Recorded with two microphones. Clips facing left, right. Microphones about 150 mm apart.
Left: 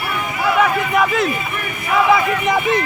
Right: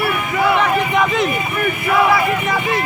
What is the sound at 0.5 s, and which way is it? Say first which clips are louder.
Speech: even; 5° left (ahead or behind).